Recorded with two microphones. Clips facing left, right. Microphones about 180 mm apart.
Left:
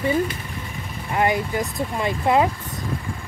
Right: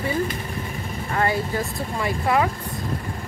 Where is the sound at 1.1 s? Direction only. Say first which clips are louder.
Left 2 dB; 15° left (ahead or behind).